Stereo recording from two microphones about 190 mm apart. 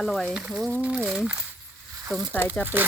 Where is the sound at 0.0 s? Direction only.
Centre (ahead or behind).